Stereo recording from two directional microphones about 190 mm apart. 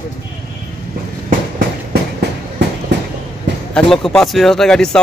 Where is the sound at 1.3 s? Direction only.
45° right (ahead or behind).